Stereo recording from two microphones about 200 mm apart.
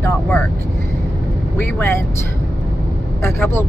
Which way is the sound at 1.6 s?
10° left (ahead or behind).